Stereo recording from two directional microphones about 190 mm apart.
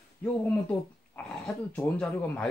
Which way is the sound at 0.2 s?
10° left (ahead or behind).